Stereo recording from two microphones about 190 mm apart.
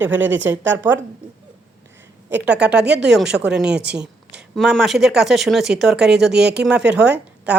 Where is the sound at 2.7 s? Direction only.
65° right (ahead or behind).